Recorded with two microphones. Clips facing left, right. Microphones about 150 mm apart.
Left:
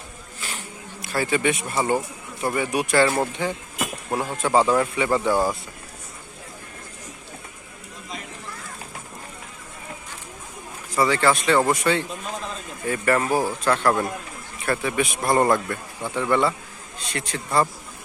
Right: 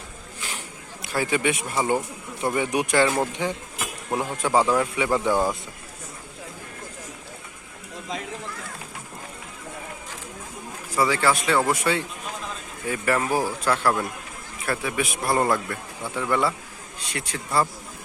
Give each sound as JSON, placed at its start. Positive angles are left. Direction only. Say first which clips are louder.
{"t": 0.3, "sound": "a sound", "louder": "left 1 dB", "side_deg": -15}
{"t": 1.0, "sound": "speech", "louder": "left 1 dB", "side_deg": -15}
{"t": 5.2, "sound": "speech", "louder": "left 1 dB", "side_deg": 10}
{"t": 10.9, "sound": "a man's voice", "louder": "left 2 dB", "side_deg": -10}